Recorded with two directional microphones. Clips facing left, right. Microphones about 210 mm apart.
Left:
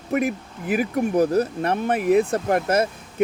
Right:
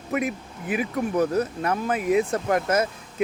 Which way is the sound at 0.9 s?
35° left (ahead or behind).